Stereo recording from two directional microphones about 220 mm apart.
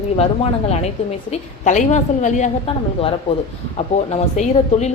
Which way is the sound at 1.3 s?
30° left (ahead or behind).